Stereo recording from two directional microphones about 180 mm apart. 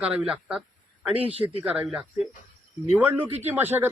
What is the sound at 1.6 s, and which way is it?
Speech, 5° right (ahead or behind).